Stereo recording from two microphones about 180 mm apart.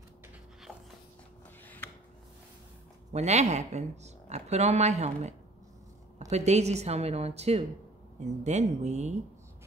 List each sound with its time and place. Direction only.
3.1 s speech: 40° right (ahead or behind)
6.3 s speech: 40° right (ahead or behind)